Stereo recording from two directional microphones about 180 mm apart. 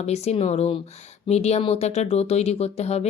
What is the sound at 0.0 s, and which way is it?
Speech, 35° left (ahead or behind).